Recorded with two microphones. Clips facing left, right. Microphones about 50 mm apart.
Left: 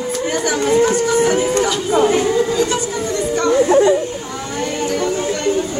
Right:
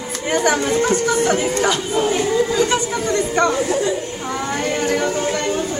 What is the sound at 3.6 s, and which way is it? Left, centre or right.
Chatter, left.